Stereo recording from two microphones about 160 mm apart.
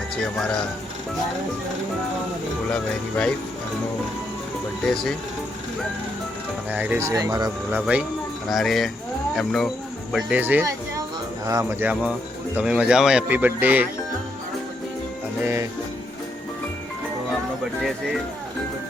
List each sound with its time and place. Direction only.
0.3 s speech: 5° left (ahead or behind)
2.7 s speech: 5° left (ahead or behind)
4.9 s speech: 5° left (ahead or behind)
6.7 s speech: 10° right (ahead or behind)
7.7 s speech: 10° right (ahead or behind)